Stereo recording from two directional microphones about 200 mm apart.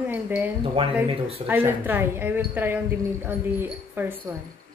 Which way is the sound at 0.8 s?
30° right (ahead or behind).